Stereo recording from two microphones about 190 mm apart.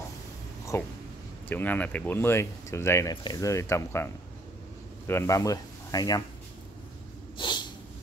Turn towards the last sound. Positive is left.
turn(degrees=25)  # may be behind; listen again after turning